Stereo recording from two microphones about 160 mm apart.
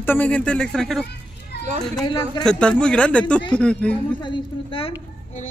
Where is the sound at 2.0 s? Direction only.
25° left (ahead or behind).